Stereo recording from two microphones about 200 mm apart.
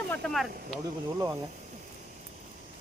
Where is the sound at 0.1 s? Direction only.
5° left (ahead or behind).